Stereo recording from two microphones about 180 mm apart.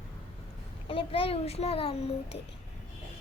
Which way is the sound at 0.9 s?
30° left (ahead or behind).